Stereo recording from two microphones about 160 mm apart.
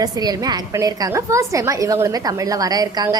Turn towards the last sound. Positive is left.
turn(degrees=-25)  # may be behind; listen again after turning